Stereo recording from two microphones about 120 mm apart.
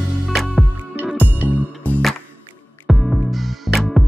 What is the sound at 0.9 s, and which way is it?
Music, 15° right (ahead or behind).